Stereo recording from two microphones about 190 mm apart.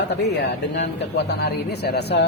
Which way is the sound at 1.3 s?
60° left (ahead or behind).